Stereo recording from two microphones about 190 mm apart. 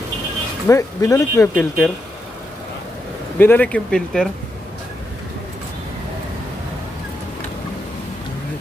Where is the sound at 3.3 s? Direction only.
10° left (ahead or behind).